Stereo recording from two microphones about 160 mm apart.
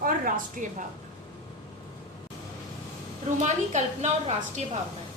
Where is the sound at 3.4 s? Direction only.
45° right (ahead or behind).